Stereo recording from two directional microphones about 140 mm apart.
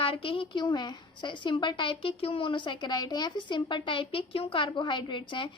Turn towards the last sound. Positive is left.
turn(degrees=35)  # may be behind; listen again after turning